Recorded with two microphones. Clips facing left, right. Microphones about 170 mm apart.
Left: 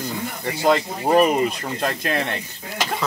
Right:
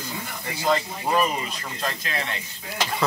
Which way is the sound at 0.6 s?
60° left (ahead or behind).